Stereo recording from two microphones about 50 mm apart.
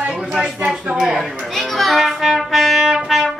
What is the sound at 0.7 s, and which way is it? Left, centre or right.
Speech, centre.